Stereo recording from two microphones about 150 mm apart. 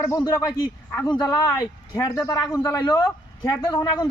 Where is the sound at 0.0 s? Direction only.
25° left (ahead or behind).